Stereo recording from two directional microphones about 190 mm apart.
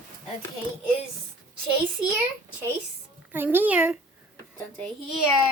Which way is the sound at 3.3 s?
10° right (ahead or behind).